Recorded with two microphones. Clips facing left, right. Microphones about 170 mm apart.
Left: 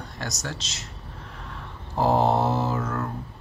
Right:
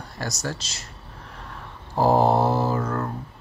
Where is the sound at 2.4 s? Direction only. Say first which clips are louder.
Right 3 dB; 35° right (ahead or behind).